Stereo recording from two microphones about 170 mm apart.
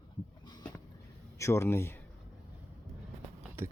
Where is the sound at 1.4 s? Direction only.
15° left (ahead or behind).